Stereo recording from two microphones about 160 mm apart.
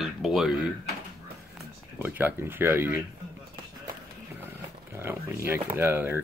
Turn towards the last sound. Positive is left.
turn(degrees=-15)  # may be behind; listen again after turning